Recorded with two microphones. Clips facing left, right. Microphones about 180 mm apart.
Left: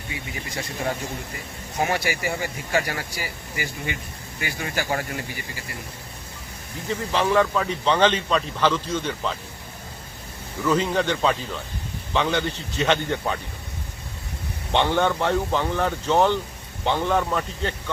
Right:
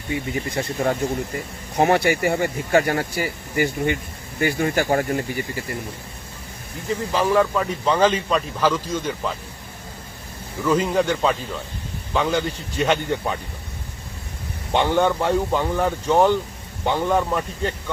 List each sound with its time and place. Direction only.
0.1 s speech: 55° right (ahead or behind)
7.1 s a man's voice: 5° right (ahead or behind)
10.6 s a man's voice: 10° right (ahead or behind)
14.7 s a man's voice: 10° right (ahead or behind)